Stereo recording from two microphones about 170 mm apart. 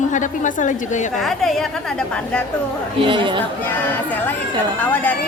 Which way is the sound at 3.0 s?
30° right (ahead or behind).